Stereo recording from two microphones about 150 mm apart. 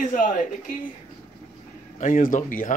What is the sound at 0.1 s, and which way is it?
Speech, 60° left (ahead or behind).